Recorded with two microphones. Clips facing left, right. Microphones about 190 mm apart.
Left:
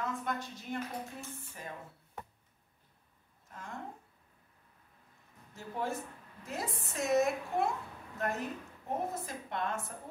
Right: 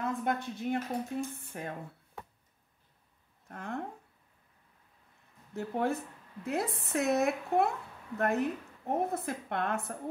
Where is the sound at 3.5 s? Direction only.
60° right (ahead or behind).